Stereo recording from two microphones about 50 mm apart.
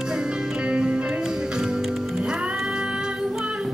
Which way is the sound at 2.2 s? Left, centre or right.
Right.